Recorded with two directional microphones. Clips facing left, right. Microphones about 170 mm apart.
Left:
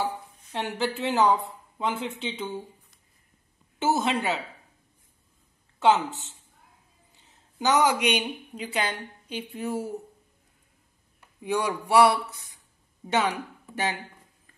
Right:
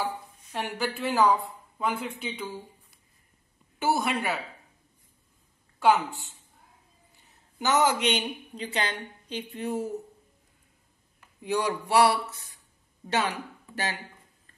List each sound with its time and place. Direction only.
0.0 s speech: 20° left (ahead or behind)
3.8 s speech: 20° left (ahead or behind)
5.8 s a woman's voice: 20° left (ahead or behind)
11.9 s speech: 10° left (ahead or behind)